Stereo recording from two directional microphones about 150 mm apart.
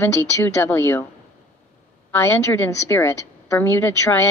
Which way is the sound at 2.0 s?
15° left (ahead or behind).